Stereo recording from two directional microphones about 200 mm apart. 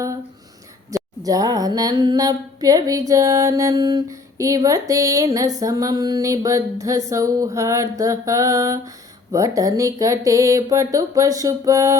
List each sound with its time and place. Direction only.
0.9 s speech: 15° right (ahead or behind)